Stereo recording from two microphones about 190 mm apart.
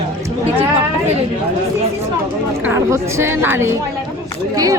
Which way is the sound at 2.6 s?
15° right (ahead or behind).